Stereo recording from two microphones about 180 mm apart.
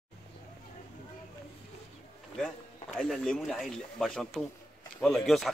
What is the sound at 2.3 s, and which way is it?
Speech, 5° left (ahead or behind).